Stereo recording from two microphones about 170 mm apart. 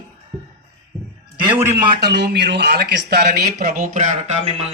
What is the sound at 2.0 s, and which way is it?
Speech, 70° right (ahead or behind).